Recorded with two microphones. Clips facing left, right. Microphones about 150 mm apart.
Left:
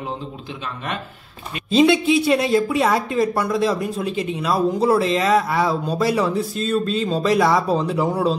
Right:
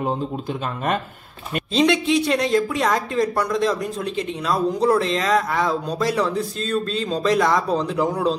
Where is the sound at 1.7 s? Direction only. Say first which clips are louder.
Left 3 dB; 5° left (ahead or behind).